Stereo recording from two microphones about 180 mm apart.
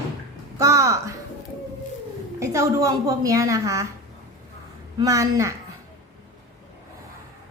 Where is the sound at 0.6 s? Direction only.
15° right (ahead or behind).